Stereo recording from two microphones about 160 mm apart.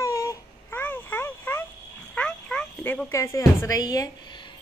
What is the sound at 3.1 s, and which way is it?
Speech, 20° left (ahead or behind).